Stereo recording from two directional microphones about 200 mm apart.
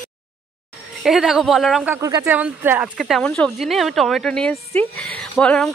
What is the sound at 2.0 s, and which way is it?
A woman's voice, 15° right (ahead or behind).